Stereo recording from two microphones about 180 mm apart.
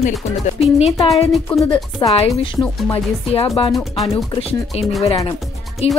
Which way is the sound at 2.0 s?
35° left (ahead or behind).